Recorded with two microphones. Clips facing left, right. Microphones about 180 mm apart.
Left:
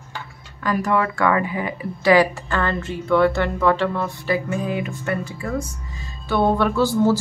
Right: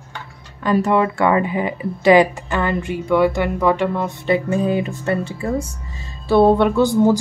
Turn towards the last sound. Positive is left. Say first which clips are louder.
# right 3 dB
turn(degrees=-20)  # may be behind; listen again after turning